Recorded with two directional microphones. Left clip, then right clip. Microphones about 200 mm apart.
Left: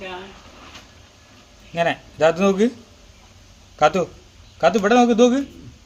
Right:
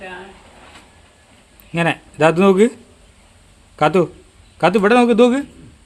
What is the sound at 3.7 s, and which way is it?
Speech, 55° right (ahead or behind).